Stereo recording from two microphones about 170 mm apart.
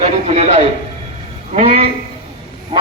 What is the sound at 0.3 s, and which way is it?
A man's voice, 40° right (ahead or behind).